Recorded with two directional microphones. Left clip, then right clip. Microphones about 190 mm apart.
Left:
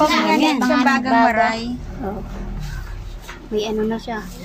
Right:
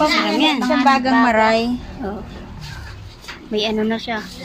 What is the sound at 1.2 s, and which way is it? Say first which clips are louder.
Speech: right 2 dB; 55° right (ahead or behind).